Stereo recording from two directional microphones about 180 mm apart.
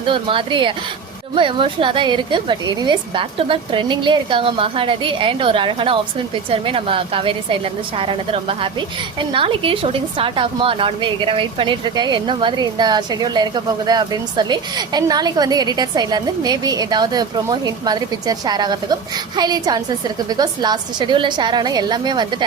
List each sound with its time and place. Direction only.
0.0 s a woman's voice: 30° right (ahead or behind)